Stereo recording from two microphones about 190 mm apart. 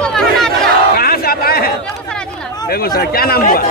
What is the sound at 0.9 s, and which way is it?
Crowd, 55° left (ahead or behind).